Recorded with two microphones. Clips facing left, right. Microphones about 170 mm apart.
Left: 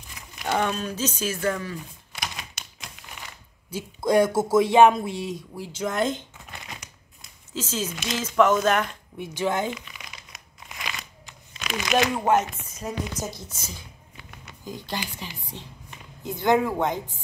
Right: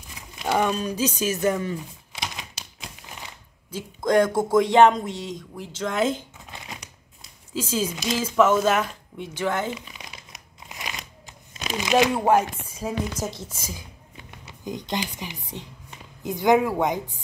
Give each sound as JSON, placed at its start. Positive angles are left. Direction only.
{"t": 0.5, "sound": "speech", "side_deg": -10}
{"t": 2.6, "sound": "crumpling", "side_deg": -30}
{"t": 3.7, "sound": "speech", "side_deg": 10}
{"t": 5.9, "sound": "speech", "side_deg": -5}
{"t": 7.5, "sound": "speech", "side_deg": -10}
{"t": 9.2, "sound": "speech", "side_deg": 15}
{"t": 10.7, "sound": "a sound", "side_deg": -20}
{"t": 11.6, "sound": "a sound", "side_deg": -35}
{"t": 12.0, "sound": "speech", "side_deg": -10}
{"t": 13.3, "sound": "a woman's voice", "side_deg": -25}